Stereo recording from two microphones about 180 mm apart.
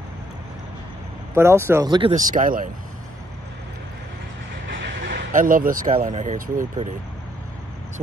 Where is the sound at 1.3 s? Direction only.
15° right (ahead or behind).